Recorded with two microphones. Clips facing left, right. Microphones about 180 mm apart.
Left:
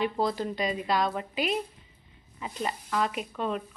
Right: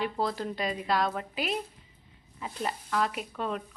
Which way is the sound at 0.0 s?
Centre (ahead or behind).